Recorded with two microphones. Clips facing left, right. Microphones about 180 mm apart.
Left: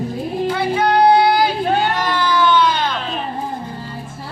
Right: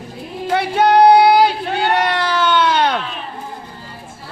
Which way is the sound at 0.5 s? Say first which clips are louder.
Right 5 dB; 75° right (ahead or behind).